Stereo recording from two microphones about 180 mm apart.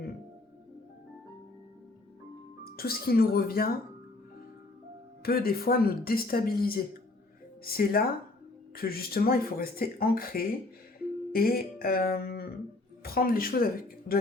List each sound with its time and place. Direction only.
2.6 s speech: 60° left (ahead or behind)
5.2 s speech: 55° left (ahead or behind)